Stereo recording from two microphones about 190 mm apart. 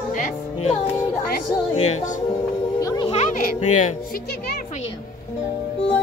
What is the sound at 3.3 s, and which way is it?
Speech, 45° left (ahead or behind).